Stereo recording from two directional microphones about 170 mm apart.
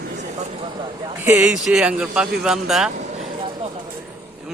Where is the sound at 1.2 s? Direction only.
10° right (ahead or behind).